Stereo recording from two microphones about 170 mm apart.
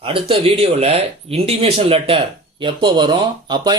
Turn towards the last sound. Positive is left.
turn(degrees=-25)  # may be behind; listen again after turning